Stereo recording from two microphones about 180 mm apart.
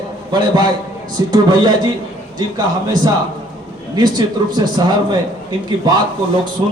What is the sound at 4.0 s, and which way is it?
A man's voice, 25° right (ahead or behind).